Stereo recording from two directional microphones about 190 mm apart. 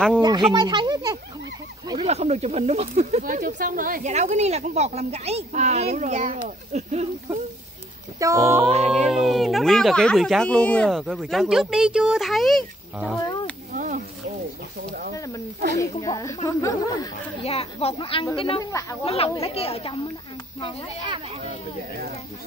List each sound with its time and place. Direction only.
0.2 s speech: 20° right (ahead or behind)
1.9 s speech: 30° right (ahead or behind)
8.2 s music: 15° right (ahead or behind)
9.1 s speech: centre (ahead or behind)
13.7 s a sound: 45° right (ahead or behind)
15.1 s snake: 15° left (ahead or behind)
15.8 s speech: 15° left (ahead or behind)
17.4 s speech: 30° left (ahead or behind)
18.7 s speech: 15° left (ahead or behind)
19.0 s speech: 30° left (ahead or behind)
21.0 s speech: 25° right (ahead or behind)